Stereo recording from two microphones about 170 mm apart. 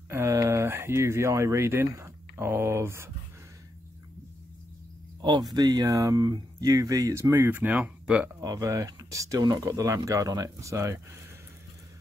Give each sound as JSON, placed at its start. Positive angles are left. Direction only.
{"t": 0.1, "sound": "speech", "side_deg": -15}
{"t": 5.5, "sound": "speech", "side_deg": -25}
{"t": 8.4, "sound": "speech", "side_deg": -20}